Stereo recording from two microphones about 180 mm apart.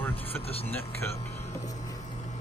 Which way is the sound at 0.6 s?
10° left (ahead or behind).